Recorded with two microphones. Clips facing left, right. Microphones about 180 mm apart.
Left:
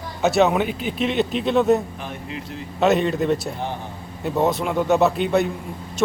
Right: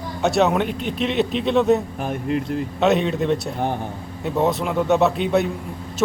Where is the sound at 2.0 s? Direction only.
50° right (ahead or behind).